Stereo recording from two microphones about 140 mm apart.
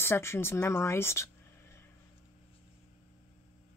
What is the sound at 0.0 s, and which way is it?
Speech, 20° left (ahead or behind).